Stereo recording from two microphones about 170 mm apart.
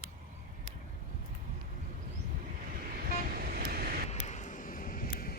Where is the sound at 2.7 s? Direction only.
55° right (ahead or behind).